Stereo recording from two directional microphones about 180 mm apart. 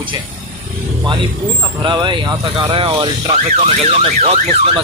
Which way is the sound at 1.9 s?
25° right (ahead or behind).